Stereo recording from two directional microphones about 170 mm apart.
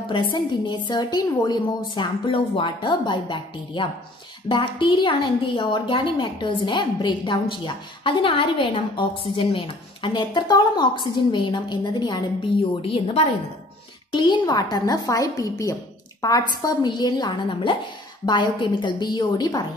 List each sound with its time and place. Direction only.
0.1 s a woman's voice: 25° left (ahead or behind)